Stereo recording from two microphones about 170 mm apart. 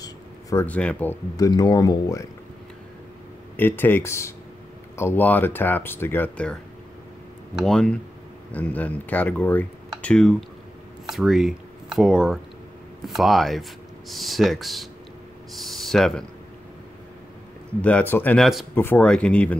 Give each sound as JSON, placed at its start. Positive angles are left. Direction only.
{"t": 0.0, "sound": "a sound", "side_deg": 20}
{"t": 0.7, "sound": "speech", "side_deg": 10}
{"t": 1.3, "sound": "speech", "side_deg": 20}
{"t": 3.5, "sound": "speech", "side_deg": 10}
{"t": 17.8, "sound": "speech", "side_deg": 10}